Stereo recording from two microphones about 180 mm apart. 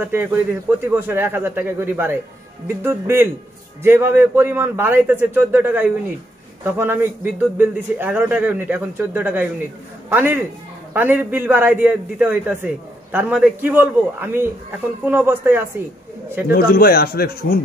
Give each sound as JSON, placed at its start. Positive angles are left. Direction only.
{"t": 0.0, "sound": "a man's voice", "side_deg": -10}
{"t": 16.5, "sound": "speech", "side_deg": 55}